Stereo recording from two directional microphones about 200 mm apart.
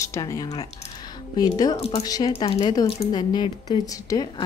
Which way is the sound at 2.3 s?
30° left (ahead or behind).